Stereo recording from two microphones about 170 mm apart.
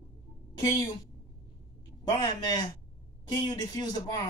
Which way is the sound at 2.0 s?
25° left (ahead or behind).